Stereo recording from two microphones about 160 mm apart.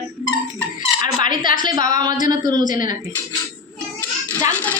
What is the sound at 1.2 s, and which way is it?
Speech, 55° left (ahead or behind).